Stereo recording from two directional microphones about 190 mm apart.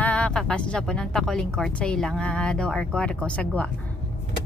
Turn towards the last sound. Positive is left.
turn(degrees=5)  # may be behind; listen again after turning